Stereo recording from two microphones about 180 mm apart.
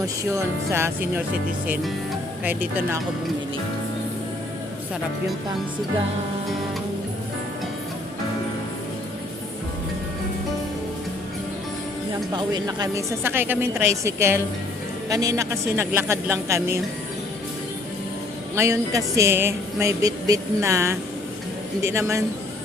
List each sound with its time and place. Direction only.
0.0 s speech: 15° right (ahead or behind)
12.3 s speech: 25° right (ahead or behind)
18.5 s speech: 15° right (ahead or behind)